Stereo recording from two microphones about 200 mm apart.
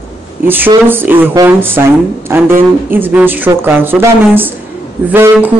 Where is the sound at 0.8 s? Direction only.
10° right (ahead or behind).